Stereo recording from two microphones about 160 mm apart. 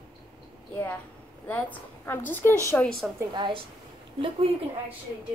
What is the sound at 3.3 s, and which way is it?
Speech, 30° right (ahead or behind).